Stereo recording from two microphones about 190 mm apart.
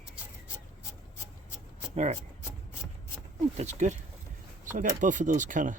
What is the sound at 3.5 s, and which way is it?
Speech, 35° right (ahead or behind).